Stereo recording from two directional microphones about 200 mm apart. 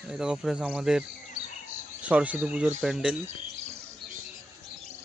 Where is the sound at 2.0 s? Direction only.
5° right (ahead or behind).